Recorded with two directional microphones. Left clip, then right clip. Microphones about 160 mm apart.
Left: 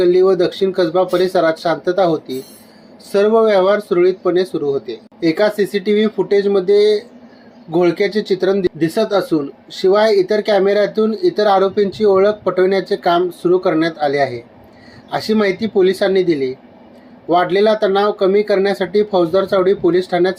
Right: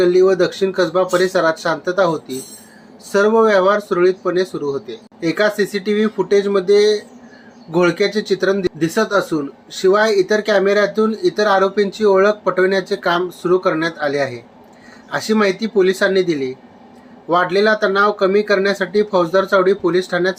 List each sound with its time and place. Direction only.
0.0 s speech: 20° left (ahead or behind)